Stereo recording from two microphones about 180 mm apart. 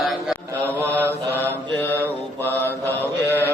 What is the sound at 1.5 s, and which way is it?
Mantra, 10° left (ahead or behind).